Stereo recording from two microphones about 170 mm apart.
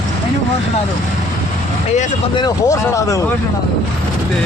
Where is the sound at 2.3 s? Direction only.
20° left (ahead or behind).